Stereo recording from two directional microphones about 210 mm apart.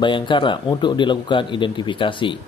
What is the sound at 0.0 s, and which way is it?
Speech, 20° left (ahead or behind).